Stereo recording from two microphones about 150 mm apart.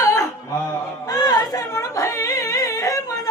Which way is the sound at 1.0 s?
25° left (ahead or behind).